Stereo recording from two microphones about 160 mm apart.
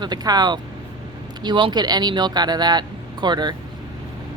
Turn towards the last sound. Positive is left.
turn(degrees=-25)  # may be behind; listen again after turning